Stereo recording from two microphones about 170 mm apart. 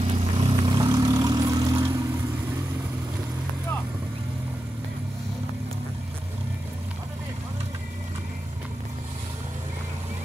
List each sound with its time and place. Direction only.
0.0 s vehicle: 30° right (ahead or behind)